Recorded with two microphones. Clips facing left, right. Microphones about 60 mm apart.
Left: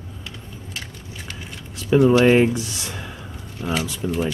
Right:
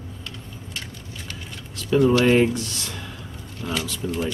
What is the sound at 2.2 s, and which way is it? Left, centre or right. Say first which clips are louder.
Speech: left 2 dB; centre.